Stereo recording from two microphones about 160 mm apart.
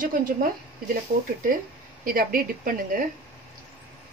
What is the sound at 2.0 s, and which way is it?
Speech, 60° right (ahead or behind).